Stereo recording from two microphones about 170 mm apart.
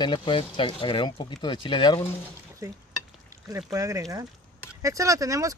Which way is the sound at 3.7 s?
20° right (ahead or behind).